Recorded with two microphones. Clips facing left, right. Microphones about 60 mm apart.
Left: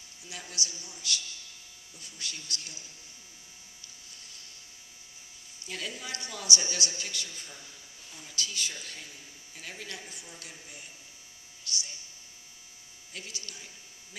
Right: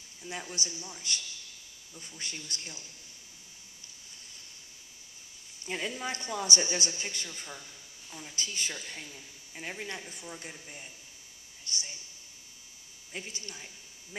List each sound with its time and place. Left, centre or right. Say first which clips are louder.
0.3 s speech: right 2 dB; right
5.7 s speech: right 4 dB; right
13.1 s speech: right 2 dB; right